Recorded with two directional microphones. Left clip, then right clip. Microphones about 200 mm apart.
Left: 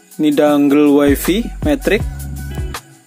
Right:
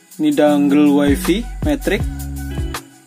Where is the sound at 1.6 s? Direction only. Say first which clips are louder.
Left 3 dB; 30° left (ahead or behind).